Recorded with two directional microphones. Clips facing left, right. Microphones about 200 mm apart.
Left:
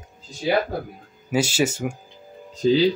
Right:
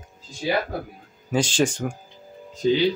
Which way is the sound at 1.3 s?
10° left (ahead or behind).